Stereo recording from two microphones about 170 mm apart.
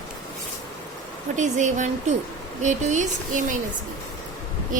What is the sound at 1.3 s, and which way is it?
A woman's voice, 45° right (ahead or behind).